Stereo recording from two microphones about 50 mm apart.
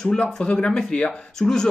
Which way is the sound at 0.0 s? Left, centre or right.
Centre.